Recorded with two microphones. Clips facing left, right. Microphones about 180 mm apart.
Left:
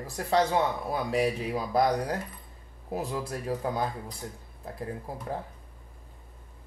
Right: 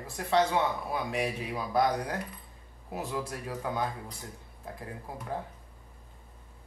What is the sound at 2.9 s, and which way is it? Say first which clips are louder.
Speech: left 3 dB; 35° left (ahead or behind).